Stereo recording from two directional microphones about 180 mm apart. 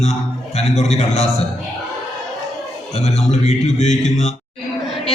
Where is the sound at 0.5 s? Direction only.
40° left (ahead or behind).